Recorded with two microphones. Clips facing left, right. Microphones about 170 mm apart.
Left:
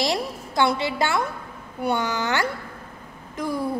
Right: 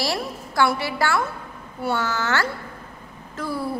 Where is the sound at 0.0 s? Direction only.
20° left (ahead or behind).